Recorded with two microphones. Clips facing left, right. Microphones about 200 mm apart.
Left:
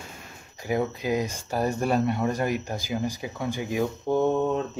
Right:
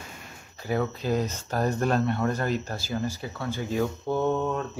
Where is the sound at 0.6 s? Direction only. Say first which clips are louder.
Left 1 dB; 15° left (ahead or behind).